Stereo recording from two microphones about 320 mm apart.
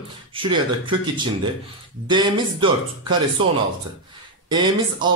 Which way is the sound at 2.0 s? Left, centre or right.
Centre.